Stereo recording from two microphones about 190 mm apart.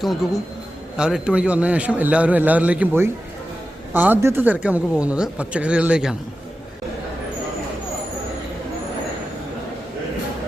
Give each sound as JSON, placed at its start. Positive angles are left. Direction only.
{"t": 0.9, "sound": "speech", "side_deg": -5}